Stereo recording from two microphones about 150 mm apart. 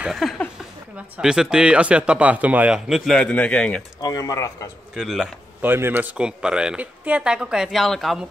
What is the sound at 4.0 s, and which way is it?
Speech, 25° left (ahead or behind).